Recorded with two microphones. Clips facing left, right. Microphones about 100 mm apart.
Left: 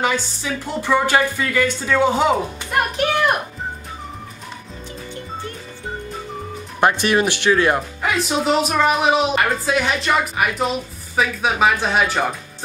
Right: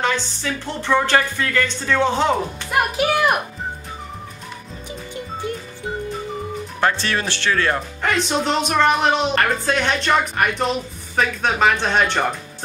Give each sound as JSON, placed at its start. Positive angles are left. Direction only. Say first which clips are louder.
{"t": 0.0, "sound": "speech", "louder": "left 1 dB", "side_deg": 10}
{"t": 2.7, "sound": "speech", "louder": "right 1 dB", "side_deg": -5}
{"t": 6.8, "sound": "speech", "louder": "left 4 dB", "side_deg": 15}
{"t": 8.0, "sound": "speech", "louder": "even", "side_deg": 5}